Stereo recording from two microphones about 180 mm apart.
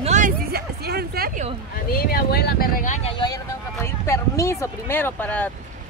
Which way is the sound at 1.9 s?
55° left (ahead or behind).